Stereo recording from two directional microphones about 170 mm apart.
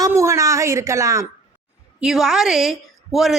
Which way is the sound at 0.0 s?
15° right (ahead or behind).